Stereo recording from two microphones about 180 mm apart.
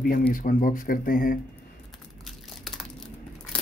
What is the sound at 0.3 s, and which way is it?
Speech, 50° left (ahead or behind).